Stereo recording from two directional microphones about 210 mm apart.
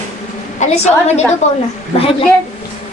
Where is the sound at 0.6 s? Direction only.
30° left (ahead or behind).